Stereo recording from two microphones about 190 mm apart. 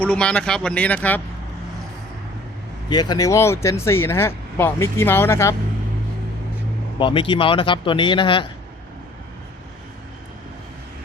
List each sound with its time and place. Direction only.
0.0 s speech: 5° left (ahead or behind)
2.9 s speech: 20° left (ahead or behind)
7.0 s speech: 25° left (ahead or behind)